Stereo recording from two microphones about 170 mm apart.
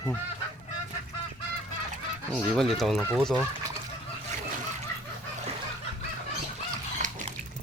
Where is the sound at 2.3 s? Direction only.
Centre (ahead or behind).